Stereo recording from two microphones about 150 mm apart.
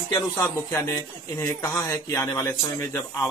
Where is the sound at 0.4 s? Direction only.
20° left (ahead or behind).